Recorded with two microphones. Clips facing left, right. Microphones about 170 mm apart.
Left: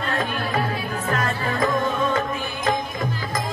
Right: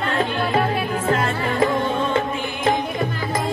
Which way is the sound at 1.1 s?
25° right (ahead or behind).